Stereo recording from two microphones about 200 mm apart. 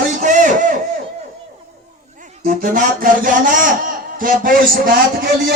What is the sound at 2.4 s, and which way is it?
Speech, 40° right (ahead or behind).